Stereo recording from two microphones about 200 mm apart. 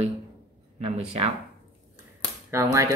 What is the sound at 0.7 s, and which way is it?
Speech, 30° right (ahead or behind).